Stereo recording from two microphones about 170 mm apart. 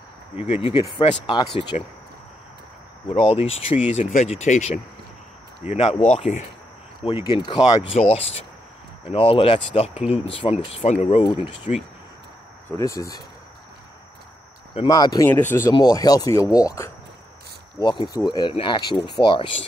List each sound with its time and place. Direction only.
0.4 s speech: 35° left (ahead or behind)
3.3 s speech: 35° left (ahead or behind)
3.9 s speech: 45° left (ahead or behind)
7.3 s speech: 25° left (ahead or behind)
9.9 s speech: 10° right (ahead or behind)
10.4 s speech: 35° left (ahead or behind)
12.6 s speech: 20° left (ahead or behind)
14.8 s speech: 25° left (ahead or behind)
15.2 s speech: 10° left (ahead or behind); by 19.5 s 30° left (ahead or behind)